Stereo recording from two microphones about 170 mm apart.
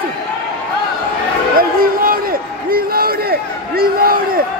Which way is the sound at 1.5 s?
60° right (ahead or behind).